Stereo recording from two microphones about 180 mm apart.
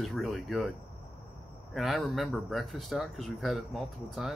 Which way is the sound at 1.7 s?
Centre (ahead or behind).